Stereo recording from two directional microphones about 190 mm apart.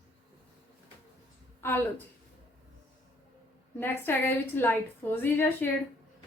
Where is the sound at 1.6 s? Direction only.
10° left (ahead or behind).